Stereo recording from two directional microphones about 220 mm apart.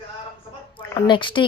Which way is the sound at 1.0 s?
20° left (ahead or behind).